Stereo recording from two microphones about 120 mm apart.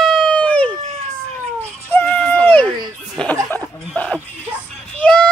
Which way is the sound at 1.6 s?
15° left (ahead or behind).